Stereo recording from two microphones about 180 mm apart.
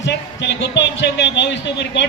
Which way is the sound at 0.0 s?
80° left.